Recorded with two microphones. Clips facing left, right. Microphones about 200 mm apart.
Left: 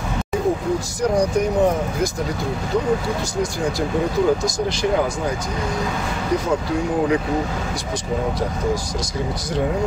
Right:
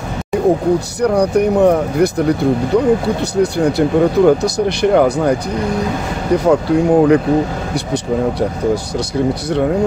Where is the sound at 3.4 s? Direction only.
65° right (ahead or behind).